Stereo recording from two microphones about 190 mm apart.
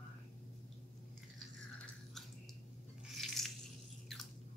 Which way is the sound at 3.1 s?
Centre (ahead or behind).